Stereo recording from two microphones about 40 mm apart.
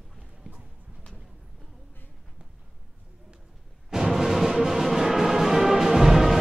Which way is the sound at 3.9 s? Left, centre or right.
Centre.